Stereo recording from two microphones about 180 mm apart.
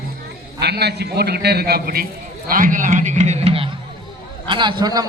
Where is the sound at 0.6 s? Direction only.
65° right (ahead or behind).